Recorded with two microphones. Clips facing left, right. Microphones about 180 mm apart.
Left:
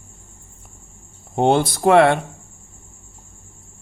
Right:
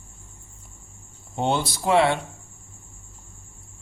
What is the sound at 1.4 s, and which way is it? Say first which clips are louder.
Speech: left 8 dB; 55° left (ahead or behind).